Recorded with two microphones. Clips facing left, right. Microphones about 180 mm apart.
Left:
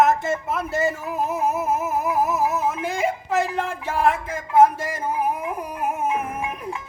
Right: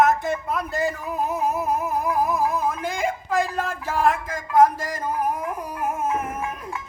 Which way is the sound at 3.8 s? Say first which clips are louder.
Even; 10° left (ahead or behind).